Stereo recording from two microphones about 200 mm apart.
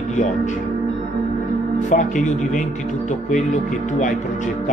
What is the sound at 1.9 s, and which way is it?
Speech, 40° left (ahead or behind).